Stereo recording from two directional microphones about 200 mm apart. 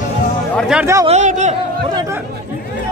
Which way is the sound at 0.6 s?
5° right (ahead or behind).